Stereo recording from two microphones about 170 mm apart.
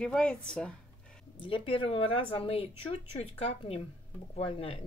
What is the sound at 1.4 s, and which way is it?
Speech, 30° left (ahead or behind).